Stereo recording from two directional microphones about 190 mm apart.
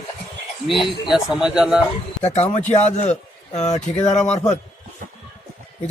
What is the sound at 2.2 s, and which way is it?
Speech, 35° left (ahead or behind).